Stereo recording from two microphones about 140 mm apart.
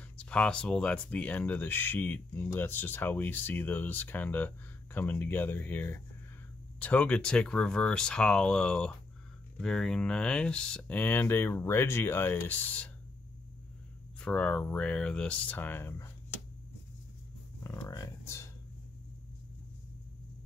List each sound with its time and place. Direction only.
0.2 s speech: 10° left (ahead or behind)
14.2 s speech: 10° left (ahead or behind)
17.6 s a sound: 25° left (ahead or behind)